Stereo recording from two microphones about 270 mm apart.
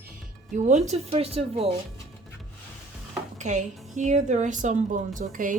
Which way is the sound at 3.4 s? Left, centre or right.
Right.